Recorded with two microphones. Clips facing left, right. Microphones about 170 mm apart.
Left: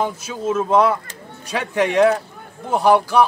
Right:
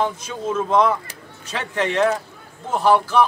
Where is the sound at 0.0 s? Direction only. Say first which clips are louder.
Left 1 dB; 5° left (ahead or behind).